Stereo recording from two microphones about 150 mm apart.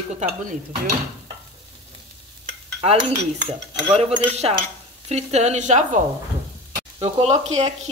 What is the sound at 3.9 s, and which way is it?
Speech, 45° right (ahead or behind).